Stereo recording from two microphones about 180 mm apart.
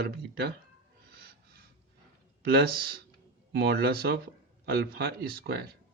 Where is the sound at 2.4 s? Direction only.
60° right (ahead or behind).